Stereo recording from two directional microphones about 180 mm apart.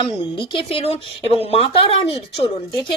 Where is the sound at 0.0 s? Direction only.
30° left (ahead or behind).